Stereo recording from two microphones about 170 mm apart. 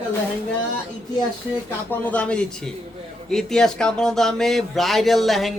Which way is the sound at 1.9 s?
10° left (ahead or behind).